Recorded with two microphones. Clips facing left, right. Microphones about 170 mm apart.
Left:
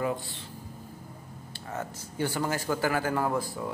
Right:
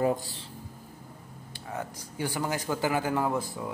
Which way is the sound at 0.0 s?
40° right (ahead or behind).